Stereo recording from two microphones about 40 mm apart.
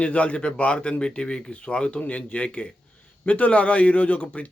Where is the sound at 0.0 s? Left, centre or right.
Left.